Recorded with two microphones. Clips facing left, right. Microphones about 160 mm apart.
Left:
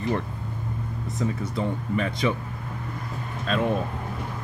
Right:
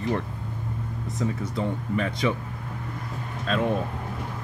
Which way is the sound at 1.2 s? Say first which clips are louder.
Even; 5° left (ahead or behind).